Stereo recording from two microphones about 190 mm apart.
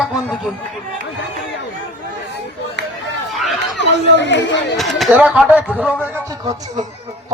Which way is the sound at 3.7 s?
70° left (ahead or behind).